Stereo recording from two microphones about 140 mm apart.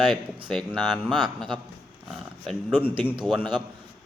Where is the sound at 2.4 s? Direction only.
5° left (ahead or behind).